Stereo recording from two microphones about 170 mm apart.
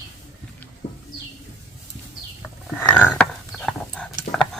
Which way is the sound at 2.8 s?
10° left (ahead or behind).